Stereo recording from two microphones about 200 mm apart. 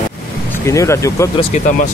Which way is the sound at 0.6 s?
15° left (ahead or behind).